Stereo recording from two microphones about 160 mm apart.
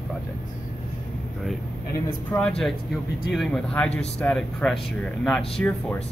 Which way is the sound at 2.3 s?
15° left (ahead or behind).